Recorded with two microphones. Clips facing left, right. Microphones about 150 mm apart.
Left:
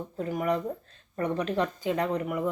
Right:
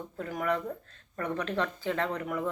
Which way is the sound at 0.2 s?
20° left (ahead or behind).